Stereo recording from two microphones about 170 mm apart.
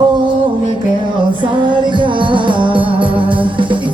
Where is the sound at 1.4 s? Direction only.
30° right (ahead or behind).